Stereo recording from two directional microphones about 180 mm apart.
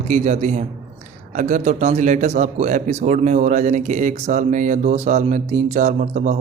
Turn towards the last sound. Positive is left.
turn(degrees=-45)  # may be behind; listen again after turning